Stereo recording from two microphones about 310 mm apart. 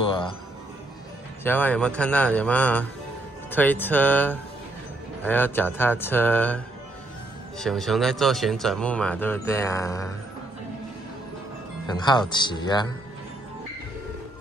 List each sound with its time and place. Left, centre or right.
0.0 s music: centre
1.4 s speech: centre
11.9 s speech: centre